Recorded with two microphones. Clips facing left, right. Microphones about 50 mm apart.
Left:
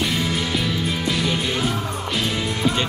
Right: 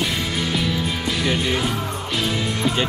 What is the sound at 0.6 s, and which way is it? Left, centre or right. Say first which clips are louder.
Music: even; centre.